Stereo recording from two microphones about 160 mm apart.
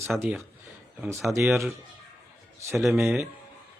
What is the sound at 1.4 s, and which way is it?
Speech, centre (ahead or behind).